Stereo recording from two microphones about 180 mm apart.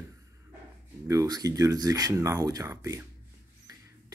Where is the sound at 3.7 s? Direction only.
20° right (ahead or behind).